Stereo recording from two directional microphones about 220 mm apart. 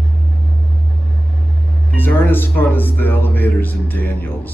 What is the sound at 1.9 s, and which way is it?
Speech, 10° left (ahead or behind).